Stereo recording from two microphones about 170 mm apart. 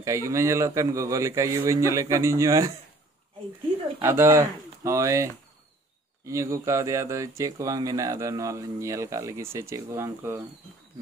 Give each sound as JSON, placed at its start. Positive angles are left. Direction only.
{"t": 0.0, "sound": "speech", "side_deg": -15}
{"t": 4.0, "sound": "speech", "side_deg": -15}